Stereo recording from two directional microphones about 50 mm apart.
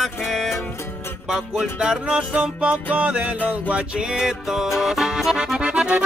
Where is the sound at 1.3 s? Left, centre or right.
Centre.